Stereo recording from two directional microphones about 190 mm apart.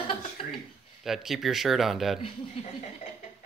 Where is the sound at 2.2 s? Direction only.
30° left (ahead or behind).